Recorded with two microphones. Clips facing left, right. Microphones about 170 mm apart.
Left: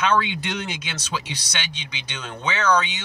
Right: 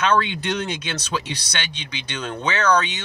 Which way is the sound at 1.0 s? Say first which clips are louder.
Right 3 dB; 60° right (ahead or behind).